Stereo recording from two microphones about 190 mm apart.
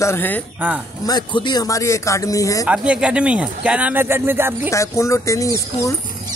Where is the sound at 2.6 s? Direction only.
5° right (ahead or behind).